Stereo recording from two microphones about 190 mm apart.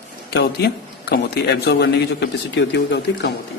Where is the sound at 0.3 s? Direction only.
60° left (ahead or behind).